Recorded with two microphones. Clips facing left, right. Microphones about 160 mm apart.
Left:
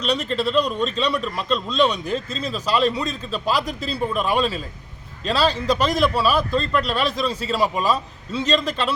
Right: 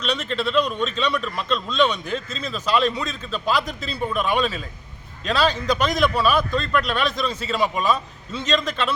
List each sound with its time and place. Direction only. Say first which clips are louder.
0.0 s a man's voice: left 2 dB; 35° left (ahead or behind)